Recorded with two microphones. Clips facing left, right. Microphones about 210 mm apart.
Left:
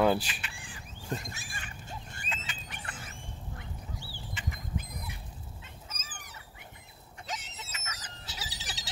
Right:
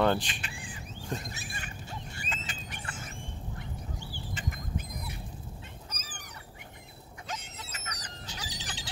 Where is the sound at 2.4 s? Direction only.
45° right (ahead or behind).